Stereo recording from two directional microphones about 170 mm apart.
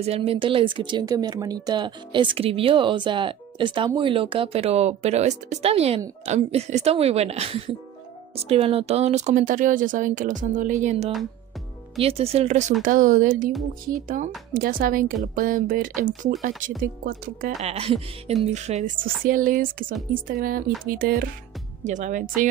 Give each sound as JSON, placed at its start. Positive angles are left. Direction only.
{"t": 0.0, "sound": "speech", "side_deg": -35}
{"t": 13.5, "sound": "speech", "side_deg": 0}
{"t": 14.0, "sound": "speech", "side_deg": -50}
{"t": 17.6, "sound": "speech", "side_deg": -35}
{"t": 21.8, "sound": "speech", "side_deg": -45}